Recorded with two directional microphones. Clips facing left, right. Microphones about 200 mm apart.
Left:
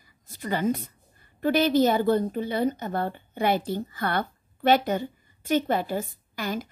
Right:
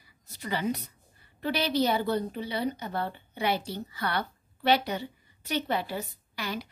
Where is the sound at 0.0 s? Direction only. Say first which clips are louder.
Left 4 dB; 50° left (ahead or behind).